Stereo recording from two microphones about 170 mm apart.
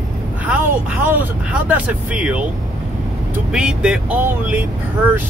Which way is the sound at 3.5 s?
5° right (ahead or behind).